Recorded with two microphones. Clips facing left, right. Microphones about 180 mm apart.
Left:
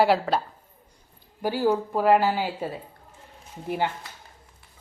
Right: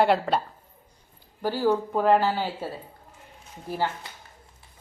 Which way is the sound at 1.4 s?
15° left (ahead or behind).